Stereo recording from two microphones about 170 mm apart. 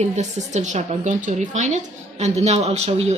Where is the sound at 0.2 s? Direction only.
45° right (ahead or behind).